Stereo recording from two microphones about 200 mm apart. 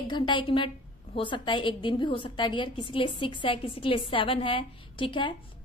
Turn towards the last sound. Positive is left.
turn(degrees=25)  # may be behind; listen again after turning